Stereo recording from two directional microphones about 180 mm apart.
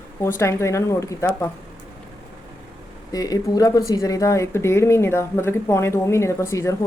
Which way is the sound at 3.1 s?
20° left (ahead or behind).